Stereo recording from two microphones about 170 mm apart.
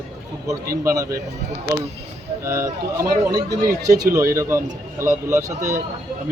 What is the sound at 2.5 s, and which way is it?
Speech, 15° right (ahead or behind).